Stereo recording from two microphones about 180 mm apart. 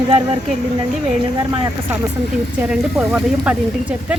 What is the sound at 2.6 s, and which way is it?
Speech, 5° right (ahead or behind).